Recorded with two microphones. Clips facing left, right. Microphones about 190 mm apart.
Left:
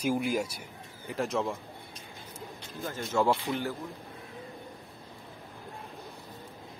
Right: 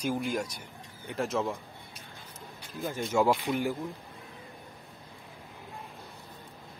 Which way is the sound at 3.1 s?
15° right (ahead or behind).